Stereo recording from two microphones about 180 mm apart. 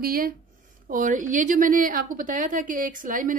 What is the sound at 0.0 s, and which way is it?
A woman's voice, 55° right (ahead or behind).